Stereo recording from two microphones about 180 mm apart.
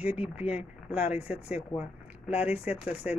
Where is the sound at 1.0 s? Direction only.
5° right (ahead or behind).